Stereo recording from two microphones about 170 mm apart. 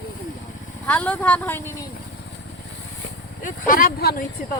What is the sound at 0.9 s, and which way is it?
A woman's voice, 10° left (ahead or behind).